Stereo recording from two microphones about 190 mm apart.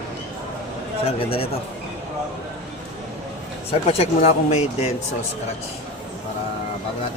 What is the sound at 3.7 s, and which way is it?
Speech, 30° left (ahead or behind).